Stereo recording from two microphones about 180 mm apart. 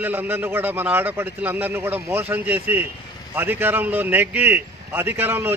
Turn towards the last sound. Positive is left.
turn(degrees=-10)  # may be behind; listen again after turning